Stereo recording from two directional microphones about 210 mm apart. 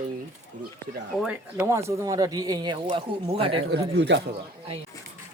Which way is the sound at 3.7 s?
55° right (ahead or behind).